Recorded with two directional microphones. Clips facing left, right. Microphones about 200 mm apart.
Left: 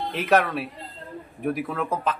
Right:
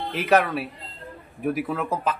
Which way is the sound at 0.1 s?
Centre (ahead or behind).